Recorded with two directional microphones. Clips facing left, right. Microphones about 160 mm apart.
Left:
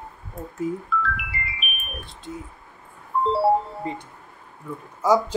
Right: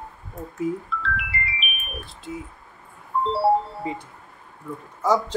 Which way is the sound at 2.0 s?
5° right (ahead or behind).